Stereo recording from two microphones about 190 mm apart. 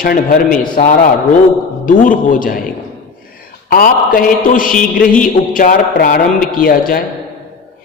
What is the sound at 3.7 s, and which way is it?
A man's voice, 50° left (ahead or behind).